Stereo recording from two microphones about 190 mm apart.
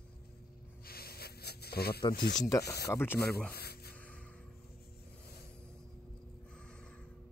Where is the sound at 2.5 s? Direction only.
15° left (ahead or behind).